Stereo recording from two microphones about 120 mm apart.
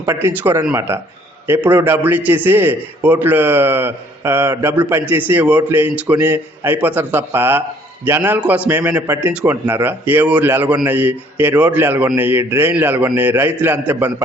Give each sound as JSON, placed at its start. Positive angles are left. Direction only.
{"t": 0.1, "sound": "a man's voice", "side_deg": -20}